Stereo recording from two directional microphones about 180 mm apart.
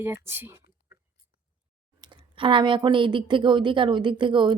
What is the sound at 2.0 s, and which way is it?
Speech, 30° right (ahead or behind).